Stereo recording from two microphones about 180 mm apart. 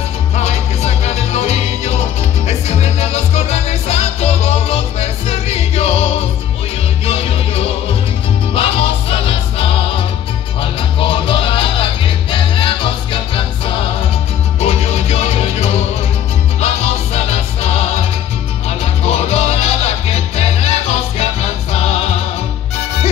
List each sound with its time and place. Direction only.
0.4 s music: 40° left (ahead or behind)
7.1 s music: 35° left (ahead or behind)
14.6 s music: 35° left (ahead or behind)
19.0 s music: 35° left (ahead or behind)